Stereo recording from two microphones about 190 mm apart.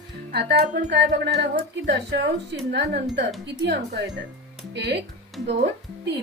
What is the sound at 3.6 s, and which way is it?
Speech, 65° right (ahead or behind).